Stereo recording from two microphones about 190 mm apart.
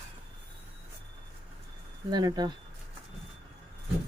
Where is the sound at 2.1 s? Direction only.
20° right (ahead or behind).